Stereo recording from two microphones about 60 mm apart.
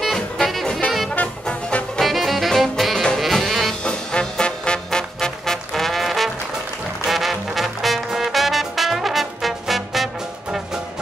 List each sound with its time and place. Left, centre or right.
0.0 s music: centre
1.1 s music: left
2.0 s saxophone: centre
3.2 s music: centre
3.8 s music: centre